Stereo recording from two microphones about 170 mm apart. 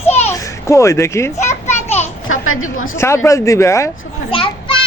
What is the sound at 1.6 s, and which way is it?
Children playing, 40° left (ahead or behind).